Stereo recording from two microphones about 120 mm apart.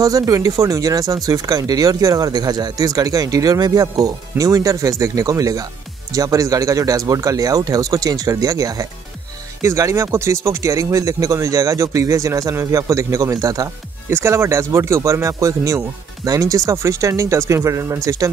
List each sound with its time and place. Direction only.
0.0 s speech: 30° right (ahead or behind)